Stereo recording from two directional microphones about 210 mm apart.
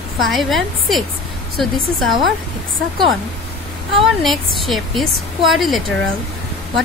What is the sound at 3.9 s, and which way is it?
A woman's voice, centre (ahead or behind).